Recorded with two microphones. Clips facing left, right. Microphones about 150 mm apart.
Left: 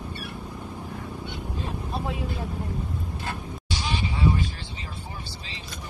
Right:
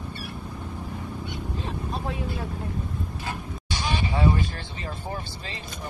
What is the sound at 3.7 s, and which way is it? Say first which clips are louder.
Vehicle: right 3 dB; 55° right (ahead or behind).